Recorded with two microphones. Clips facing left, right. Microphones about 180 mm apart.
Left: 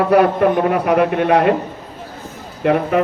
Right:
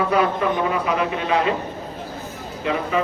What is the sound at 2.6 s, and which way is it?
Speech, 55° left (ahead or behind).